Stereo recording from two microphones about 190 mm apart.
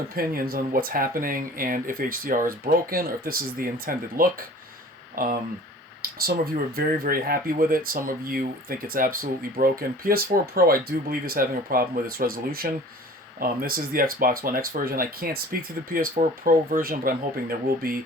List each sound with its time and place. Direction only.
0.1 s speech: 50° right (ahead or behind)